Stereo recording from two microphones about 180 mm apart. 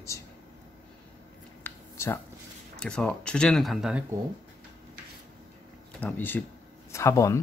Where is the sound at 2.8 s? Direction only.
5° left (ahead or behind).